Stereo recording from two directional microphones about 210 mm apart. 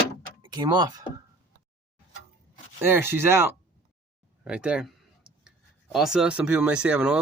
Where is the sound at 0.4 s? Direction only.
20° right (ahead or behind).